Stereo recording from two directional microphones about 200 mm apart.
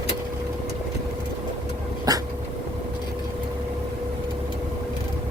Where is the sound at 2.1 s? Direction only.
20° right (ahead or behind).